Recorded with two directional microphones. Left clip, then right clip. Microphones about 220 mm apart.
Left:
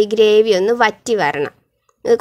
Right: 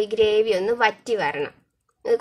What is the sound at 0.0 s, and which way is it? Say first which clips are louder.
Speech: left 8 dB; 40° left (ahead or behind).